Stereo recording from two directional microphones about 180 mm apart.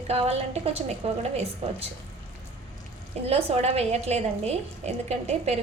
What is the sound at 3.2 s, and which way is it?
A woman's voice, 35° right (ahead or behind).